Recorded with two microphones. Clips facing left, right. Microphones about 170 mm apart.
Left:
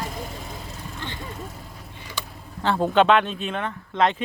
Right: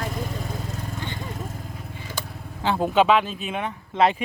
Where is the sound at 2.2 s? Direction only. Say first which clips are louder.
Even; 45° right (ahead or behind).